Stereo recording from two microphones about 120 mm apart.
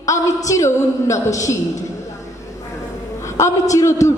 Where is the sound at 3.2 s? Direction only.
25° left (ahead or behind).